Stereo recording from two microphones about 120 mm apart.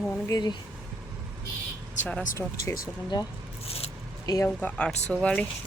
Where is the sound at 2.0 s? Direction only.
90° left.